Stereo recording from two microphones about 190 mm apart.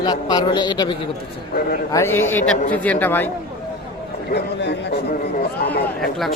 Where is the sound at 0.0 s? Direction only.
20° left (ahead or behind).